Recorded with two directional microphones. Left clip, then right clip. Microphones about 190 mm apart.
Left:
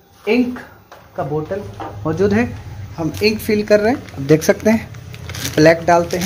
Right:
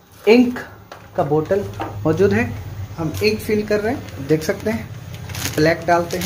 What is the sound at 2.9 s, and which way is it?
Speech, 55° left (ahead or behind).